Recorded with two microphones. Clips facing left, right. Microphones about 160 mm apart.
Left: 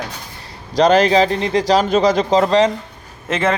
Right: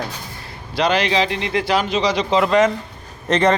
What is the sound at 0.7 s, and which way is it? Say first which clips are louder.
A man's voice: left 6 dB; 45° left (ahead or behind).